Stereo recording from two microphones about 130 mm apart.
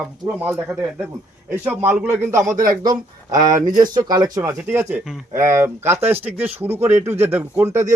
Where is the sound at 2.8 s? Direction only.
30° right (ahead or behind).